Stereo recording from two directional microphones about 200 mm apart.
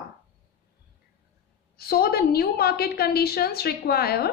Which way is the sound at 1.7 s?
50° left (ahead or behind).